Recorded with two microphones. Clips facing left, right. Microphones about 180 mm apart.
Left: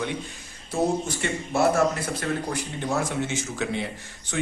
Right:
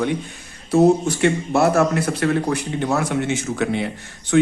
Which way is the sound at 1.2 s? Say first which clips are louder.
Right 6 dB; 70° right (ahead or behind).